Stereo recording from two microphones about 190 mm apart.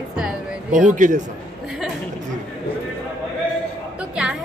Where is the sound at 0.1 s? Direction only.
5° right (ahead or behind).